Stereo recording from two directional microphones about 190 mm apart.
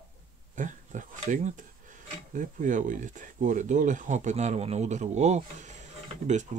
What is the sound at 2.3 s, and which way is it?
Speech, 45° right (ahead or behind).